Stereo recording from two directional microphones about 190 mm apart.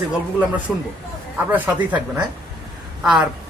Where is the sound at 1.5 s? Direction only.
10° right (ahead or behind).